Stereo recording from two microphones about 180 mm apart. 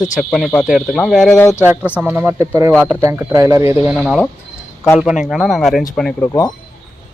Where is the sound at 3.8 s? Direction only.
Centre (ahead or behind).